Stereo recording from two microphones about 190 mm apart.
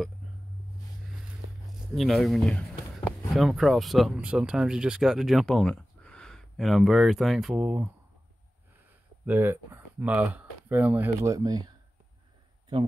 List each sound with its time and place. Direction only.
2.0 s speech: centre (ahead or behind)
9.2 s speech: 10° right (ahead or behind)